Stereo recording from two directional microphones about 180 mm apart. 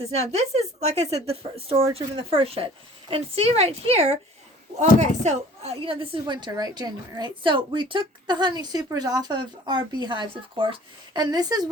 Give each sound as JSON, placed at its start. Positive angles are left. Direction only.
{"t": 0.0, "sound": "a woman's voice", "side_deg": -35}